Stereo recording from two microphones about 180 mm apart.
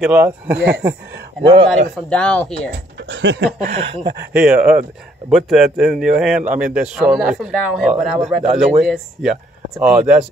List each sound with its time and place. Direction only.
0.0 s speech: 10° right (ahead or behind)
1.4 s a man's voice: 30° right (ahead or behind)
2.0 s a man's voice: 5° left (ahead or behind)
3.0 s speech: 80° right
4.3 s a man's voice: 5° right (ahead or behind)